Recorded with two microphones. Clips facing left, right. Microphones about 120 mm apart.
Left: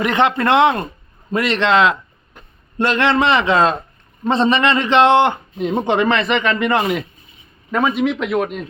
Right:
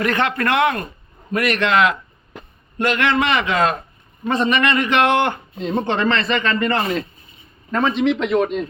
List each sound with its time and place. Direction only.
0.0 s speech: 20° left (ahead or behind)
2.3 s a sound: 90° right
2.7 s a man's voice: 30° left (ahead or behind); by 8.6 s 5° left (ahead or behind)